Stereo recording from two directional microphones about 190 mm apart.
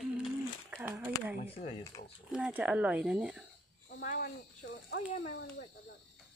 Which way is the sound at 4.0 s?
50° left (ahead or behind).